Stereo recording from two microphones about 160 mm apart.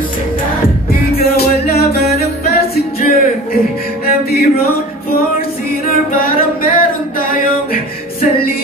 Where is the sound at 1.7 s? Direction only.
75° left (ahead or behind).